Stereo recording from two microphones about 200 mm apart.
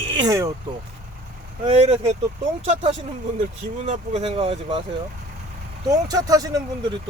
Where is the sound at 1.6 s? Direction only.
30° right (ahead or behind).